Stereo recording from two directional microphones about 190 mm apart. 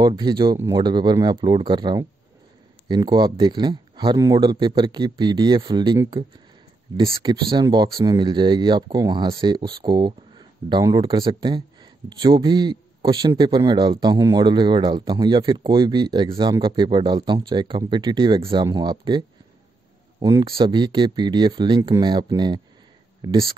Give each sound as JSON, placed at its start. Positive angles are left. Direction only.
{"t": 0.0, "sound": "speech", "side_deg": -25}
{"t": 7.0, "sound": "speech", "side_deg": -25}